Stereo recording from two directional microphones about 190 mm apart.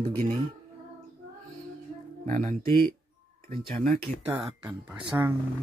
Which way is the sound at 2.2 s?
40° right (ahead or behind).